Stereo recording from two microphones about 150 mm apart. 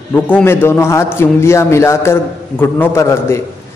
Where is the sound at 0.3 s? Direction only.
15° left (ahead or behind).